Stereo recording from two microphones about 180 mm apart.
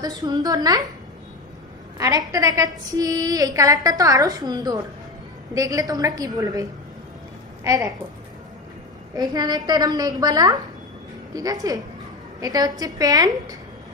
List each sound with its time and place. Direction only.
0.0 s a woman's voice: 20° right (ahead or behind)
2.0 s a woman's voice: 20° right (ahead or behind)
9.1 s a woman's voice: 20° right (ahead or behind)